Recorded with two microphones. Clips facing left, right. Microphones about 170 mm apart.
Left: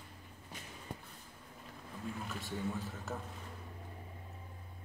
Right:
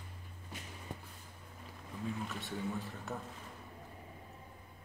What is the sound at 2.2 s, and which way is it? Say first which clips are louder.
Speech: even; centre (ahead or behind).